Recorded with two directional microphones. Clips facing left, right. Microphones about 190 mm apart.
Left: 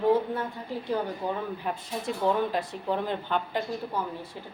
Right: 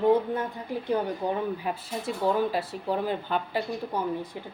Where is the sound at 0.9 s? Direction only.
15° right (ahead or behind).